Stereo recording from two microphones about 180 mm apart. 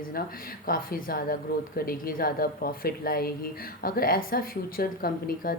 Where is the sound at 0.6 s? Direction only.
50° left (ahead or behind).